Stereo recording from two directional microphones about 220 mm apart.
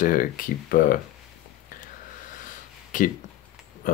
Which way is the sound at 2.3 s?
35° left (ahead or behind).